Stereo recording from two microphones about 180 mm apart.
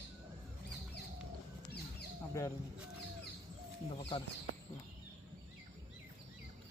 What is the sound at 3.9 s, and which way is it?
Speech, 25° left (ahead or behind).